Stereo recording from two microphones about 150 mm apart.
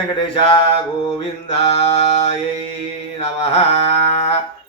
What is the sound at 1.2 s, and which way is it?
Mantra, 45° left (ahead or behind).